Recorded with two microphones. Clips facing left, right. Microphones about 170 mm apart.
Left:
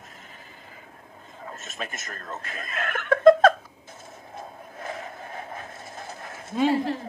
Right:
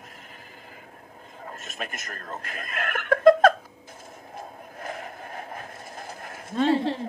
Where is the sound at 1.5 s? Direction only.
50° right (ahead or behind).